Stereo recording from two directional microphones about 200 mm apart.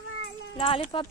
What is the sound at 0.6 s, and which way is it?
Speech, 25° left (ahead or behind).